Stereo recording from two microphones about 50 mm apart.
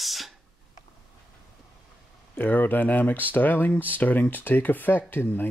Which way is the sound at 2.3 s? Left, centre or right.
Left.